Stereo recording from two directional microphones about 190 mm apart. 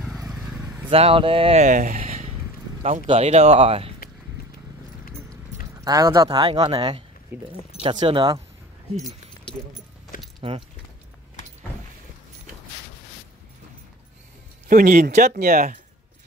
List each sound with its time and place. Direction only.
0.8 s speech: 30° right (ahead or behind)
5.9 s speech: 20° right (ahead or behind)
7.3 s speech: 10° right (ahead or behind)
8.0 s speech: 25° right (ahead or behind)
8.9 s keys jangling: centre (ahead or behind)
10.1 s keys jangling: 45° left (ahead or behind)
14.7 s speech: 45° right (ahead or behind)